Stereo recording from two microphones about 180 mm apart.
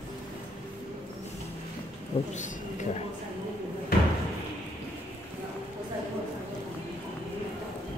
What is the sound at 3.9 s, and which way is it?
Slam, 55° left (ahead or behind).